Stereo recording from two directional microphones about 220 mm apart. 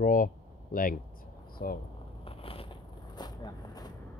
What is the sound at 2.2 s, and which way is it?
Vehicle, 25° left (ahead or behind).